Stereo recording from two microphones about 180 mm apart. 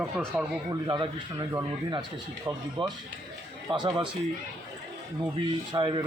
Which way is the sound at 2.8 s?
25° right (ahead or behind).